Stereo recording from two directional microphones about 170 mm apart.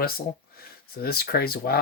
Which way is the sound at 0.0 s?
65° left (ahead or behind).